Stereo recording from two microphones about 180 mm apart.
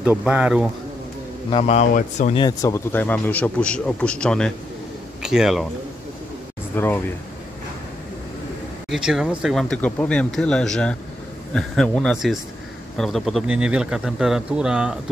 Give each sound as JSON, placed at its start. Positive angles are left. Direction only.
{"t": 0.0, "sound": "speech", "side_deg": -5}
{"t": 1.5, "sound": "speech", "side_deg": 35}
{"t": 2.3, "sound": "a man's voice", "side_deg": 20}
{"t": 6.7, "sound": "speech", "side_deg": 10}
{"t": 8.9, "sound": "speech", "side_deg": -5}